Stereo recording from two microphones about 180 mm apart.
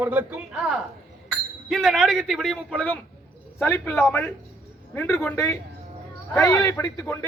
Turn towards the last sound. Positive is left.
turn(degrees=15)  # may be behind; listen again after turning